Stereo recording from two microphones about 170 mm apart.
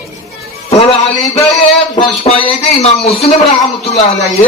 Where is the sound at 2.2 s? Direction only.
35° left (ahead or behind).